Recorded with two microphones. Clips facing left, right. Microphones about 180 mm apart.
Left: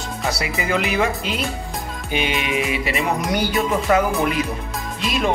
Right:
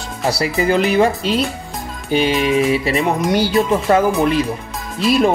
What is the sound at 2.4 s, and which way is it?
Speech, 35° right (ahead or behind).